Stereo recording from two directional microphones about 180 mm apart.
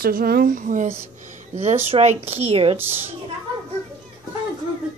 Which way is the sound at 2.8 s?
10° right (ahead or behind).